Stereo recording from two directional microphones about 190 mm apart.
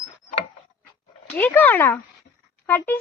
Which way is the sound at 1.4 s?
10° left (ahead or behind).